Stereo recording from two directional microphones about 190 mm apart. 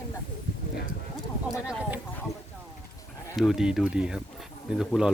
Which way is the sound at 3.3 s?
Centre (ahead or behind).